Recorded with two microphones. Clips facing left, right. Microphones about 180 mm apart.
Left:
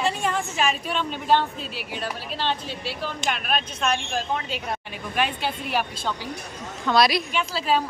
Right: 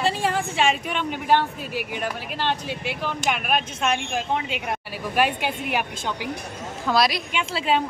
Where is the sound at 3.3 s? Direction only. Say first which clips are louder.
Right 3 dB; 15° right (ahead or behind).